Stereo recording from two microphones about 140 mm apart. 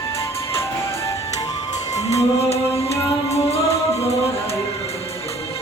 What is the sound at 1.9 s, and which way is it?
Music, 50° left (ahead or behind).